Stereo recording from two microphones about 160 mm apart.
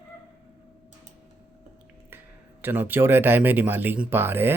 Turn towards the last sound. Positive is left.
turn(degrees=-15)  # may be behind; listen again after turning